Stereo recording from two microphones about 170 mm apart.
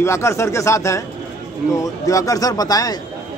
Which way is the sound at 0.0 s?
15° left (ahead or behind).